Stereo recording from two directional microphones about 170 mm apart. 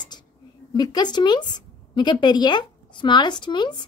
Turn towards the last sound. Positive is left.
turn(degrees=25)  # may be behind; listen again after turning